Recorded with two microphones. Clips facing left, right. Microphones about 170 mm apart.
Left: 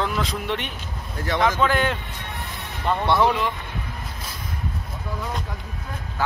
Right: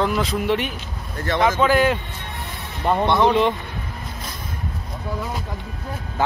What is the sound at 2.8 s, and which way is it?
Speech, 20° right (ahead or behind).